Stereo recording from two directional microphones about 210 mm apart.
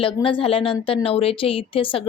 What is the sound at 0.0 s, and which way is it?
A woman's voice, 25° left (ahead or behind).